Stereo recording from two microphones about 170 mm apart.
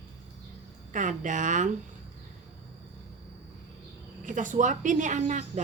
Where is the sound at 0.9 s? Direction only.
45° right (ahead or behind).